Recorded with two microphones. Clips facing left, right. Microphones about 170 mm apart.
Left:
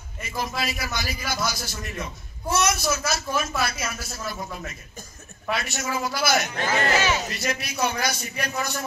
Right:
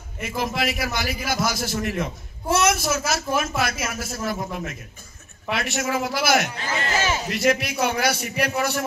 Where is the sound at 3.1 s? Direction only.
55° right (ahead or behind).